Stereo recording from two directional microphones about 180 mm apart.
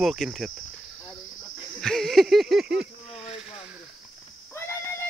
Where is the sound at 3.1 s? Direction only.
30° left (ahead or behind).